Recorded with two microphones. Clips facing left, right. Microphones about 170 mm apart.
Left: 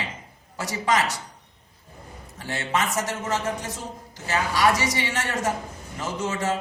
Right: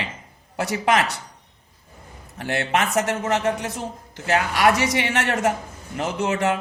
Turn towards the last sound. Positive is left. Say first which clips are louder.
# right 4 dB
turn(degrees=-65)  # may be behind; listen again after turning